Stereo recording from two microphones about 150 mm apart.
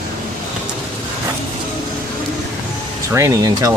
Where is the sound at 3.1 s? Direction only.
20° right (ahead or behind).